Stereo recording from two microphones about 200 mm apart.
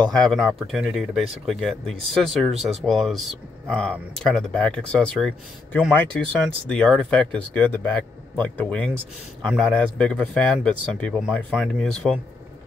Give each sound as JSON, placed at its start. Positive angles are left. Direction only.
{"t": 0.1, "sound": "speech", "side_deg": 0}
{"t": 2.1, "sound": "speech", "side_deg": -25}
{"t": 2.6, "sound": "speech", "side_deg": 0}